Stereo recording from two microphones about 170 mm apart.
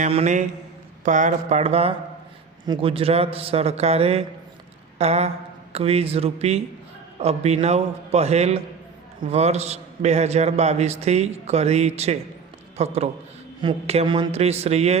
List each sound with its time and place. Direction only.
0.0 s a man's voice: 40° right (ahead or behind)